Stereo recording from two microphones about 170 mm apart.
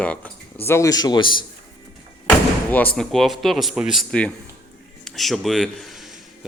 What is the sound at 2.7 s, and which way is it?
Speech, 10° left (ahead or behind).